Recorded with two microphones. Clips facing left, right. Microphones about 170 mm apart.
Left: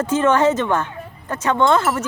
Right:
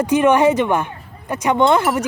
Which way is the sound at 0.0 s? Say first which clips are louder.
Right 3 dB; 15° right (ahead or behind).